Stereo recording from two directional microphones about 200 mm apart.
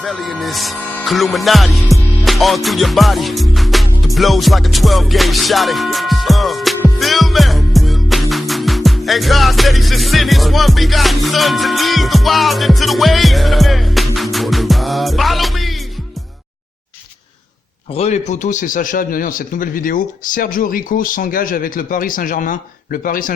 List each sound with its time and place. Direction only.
0.0 s speech: centre (ahead or behind)
7.0 s music: centre (ahead or behind)
17.9 s a man's voice: 35° left (ahead or behind)